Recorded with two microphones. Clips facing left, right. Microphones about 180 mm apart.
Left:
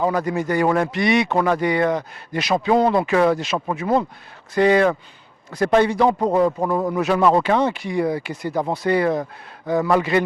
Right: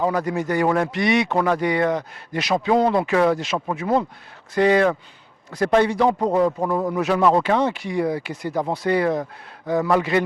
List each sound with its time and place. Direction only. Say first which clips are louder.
0.0 s speech: left 1 dB; 20° left (ahead or behind)
1.3 s speech: left 1 dB; 20° left (ahead or behind)
6.6 s speech: left 1 dB; 30° left (ahead or behind)
7.0 s speech: left 1 dB; 15° left (ahead or behind)